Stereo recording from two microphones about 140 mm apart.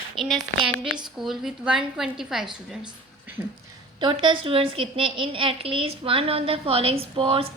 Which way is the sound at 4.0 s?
35° right (ahead or behind).